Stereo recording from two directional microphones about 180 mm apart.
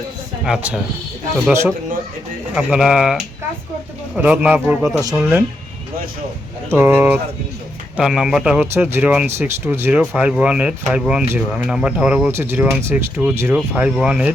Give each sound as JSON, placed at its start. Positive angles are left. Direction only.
{"t": 0.4, "sound": "speech", "side_deg": -5}
{"t": 2.6, "sound": "speech", "side_deg": -5}
{"t": 4.2, "sound": "speech", "side_deg": -10}
{"t": 6.7, "sound": "speech", "side_deg": -10}